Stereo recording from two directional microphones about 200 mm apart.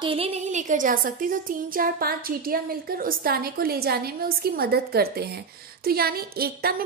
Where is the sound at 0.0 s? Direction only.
25° right (ahead or behind).